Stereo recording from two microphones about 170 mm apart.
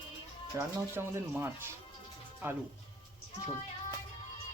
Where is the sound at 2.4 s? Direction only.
15° right (ahead or behind).